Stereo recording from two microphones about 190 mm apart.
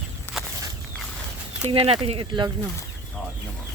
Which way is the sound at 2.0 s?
25° right (ahead or behind).